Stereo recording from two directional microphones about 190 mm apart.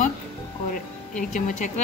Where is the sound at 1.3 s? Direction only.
40° left (ahead or behind).